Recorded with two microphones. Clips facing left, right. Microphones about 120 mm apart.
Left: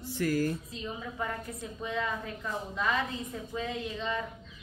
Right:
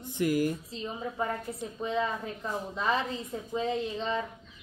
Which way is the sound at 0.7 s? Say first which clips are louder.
Right 3 dB; 25° right (ahead or behind).